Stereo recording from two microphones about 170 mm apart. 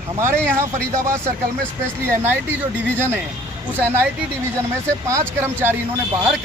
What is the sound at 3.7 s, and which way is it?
Speech, 10° right (ahead or behind).